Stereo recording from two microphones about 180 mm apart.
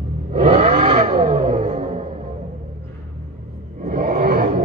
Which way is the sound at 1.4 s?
40° right (ahead or behind).